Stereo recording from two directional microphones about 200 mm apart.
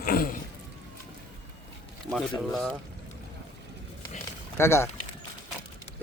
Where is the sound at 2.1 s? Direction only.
Centre (ahead or behind).